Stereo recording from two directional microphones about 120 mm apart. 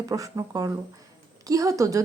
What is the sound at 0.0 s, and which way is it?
A woman's voice, 30° right (ahead or behind).